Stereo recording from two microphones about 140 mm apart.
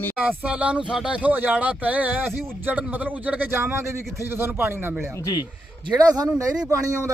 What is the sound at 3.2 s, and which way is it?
Speech, 10° right (ahead or behind).